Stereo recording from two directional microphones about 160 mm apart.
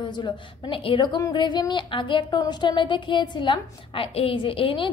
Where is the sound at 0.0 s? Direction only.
30° left (ahead or behind).